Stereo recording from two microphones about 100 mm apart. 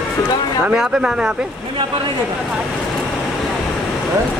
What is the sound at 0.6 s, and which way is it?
Speech, 5° right (ahead or behind).